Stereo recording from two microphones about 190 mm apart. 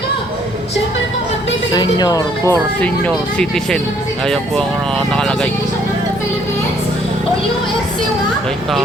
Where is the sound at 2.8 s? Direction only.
5° left (ahead or behind).